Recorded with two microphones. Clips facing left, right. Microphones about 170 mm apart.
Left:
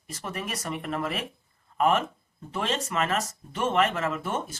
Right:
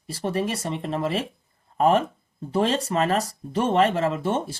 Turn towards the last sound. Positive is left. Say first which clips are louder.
# right 5 dB
turn(degrees=-30)  # may be behind; listen again after turning